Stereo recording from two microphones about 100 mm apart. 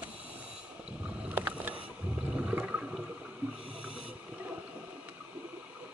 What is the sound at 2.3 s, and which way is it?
Toilet flush, 10° right (ahead or behind).